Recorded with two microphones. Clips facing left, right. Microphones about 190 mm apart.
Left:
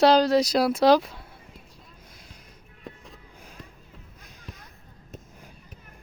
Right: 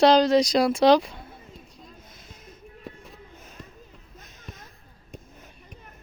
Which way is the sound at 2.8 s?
Centre (ahead or behind).